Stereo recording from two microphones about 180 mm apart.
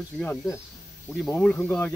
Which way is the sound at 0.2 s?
10° left (ahead or behind).